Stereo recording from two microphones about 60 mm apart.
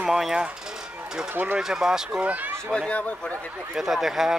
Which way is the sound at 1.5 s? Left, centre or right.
Centre.